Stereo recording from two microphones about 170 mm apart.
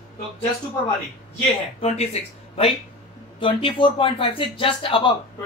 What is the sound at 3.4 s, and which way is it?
Speech, 30° left (ahead or behind).